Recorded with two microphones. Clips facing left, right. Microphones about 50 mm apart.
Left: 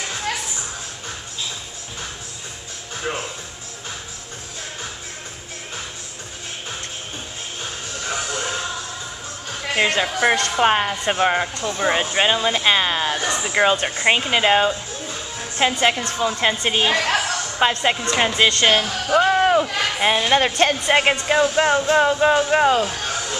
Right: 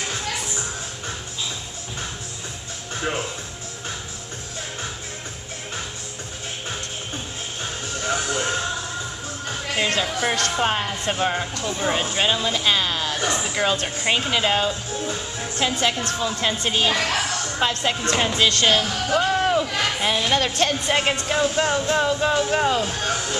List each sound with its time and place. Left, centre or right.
9.7 s a woman's voice: left
13.2 s speech: centre
13.5 s a woman's voice: left
19.0 s a sound: left
20.0 s a woman's voice: left